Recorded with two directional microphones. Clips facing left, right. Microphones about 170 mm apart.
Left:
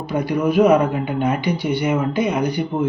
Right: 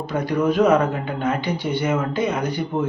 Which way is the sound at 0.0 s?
10° left (ahead or behind).